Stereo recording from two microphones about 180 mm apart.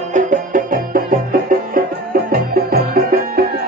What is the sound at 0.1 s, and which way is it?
Music, 45° right (ahead or behind).